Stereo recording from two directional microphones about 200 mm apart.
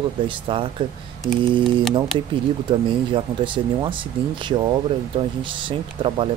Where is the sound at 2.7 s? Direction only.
25° right (ahead or behind).